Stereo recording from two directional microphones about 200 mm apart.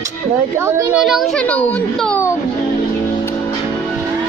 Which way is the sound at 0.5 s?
15° right (ahead or behind).